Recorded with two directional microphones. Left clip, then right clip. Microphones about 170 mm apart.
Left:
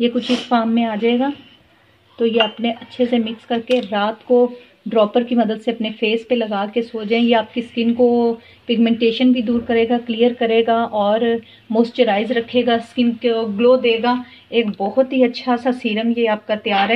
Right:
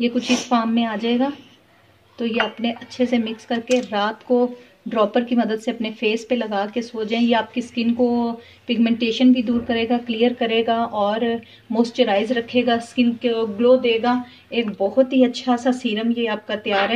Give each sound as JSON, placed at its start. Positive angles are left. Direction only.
{"t": 0.0, "sound": "a woman's voice", "side_deg": 20}